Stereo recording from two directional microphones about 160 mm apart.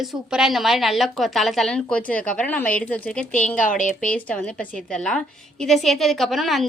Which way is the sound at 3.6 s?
55° left (ahead or behind).